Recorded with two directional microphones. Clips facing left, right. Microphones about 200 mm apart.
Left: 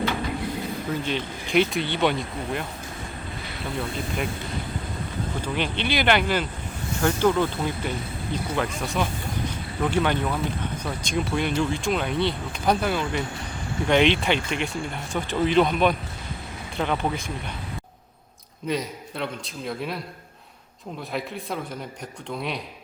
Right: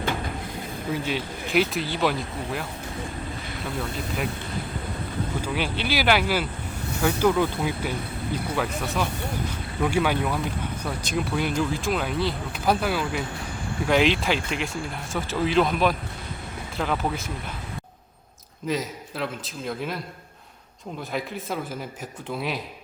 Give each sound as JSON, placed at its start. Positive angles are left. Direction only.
{"t": 1.0, "sound": "speech", "side_deg": -5}
{"t": 3.8, "sound": "speech", "side_deg": 0}
{"t": 5.4, "sound": "speech", "side_deg": -5}
{"t": 9.8, "sound": "speech", "side_deg": -10}
{"t": 18.7, "sound": "speech", "side_deg": 0}
{"t": 21.1, "sound": "speech", "side_deg": 0}